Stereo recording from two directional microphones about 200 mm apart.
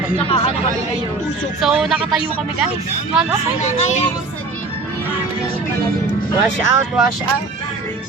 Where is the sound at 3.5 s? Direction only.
35° left (ahead or behind).